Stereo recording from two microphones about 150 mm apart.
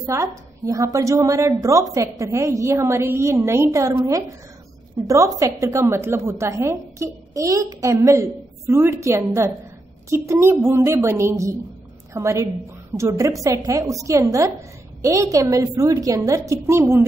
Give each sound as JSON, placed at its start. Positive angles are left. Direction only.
{"t": 0.0, "sound": "a woman's voice", "side_deg": -20}